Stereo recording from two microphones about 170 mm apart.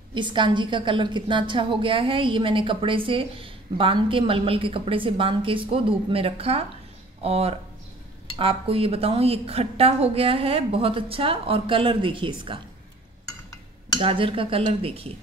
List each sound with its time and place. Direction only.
0.1 s a woman's voice: 30° right (ahead or behind)
13.9 s a woman's voice: 30° right (ahead or behind)